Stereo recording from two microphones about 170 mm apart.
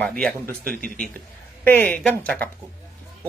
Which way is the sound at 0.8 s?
60° right (ahead or behind).